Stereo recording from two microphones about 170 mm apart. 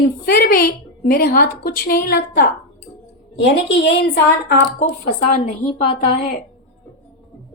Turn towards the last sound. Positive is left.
turn(degrees=45)  # may be behind; listen again after turning